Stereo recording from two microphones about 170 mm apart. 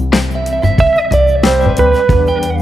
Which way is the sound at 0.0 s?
Centre (ahead or behind).